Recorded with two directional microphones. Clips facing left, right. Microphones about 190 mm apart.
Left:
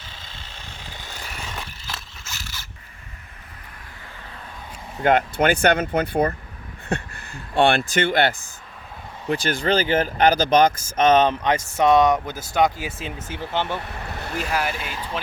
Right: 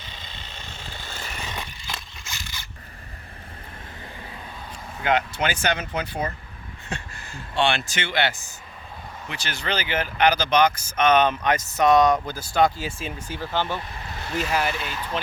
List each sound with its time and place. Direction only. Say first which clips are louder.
1.0 s vehicle: right 1 dB; 10° left (ahead or behind)
4.9 s speech: left 5 dB; 45° left (ahead or behind)
10.9 s speech: left 3 dB; 30° left (ahead or behind)
13.7 s vehicle: left 3 dB; 65° left (ahead or behind)
14.8 s speech: even; 10° left (ahead or behind)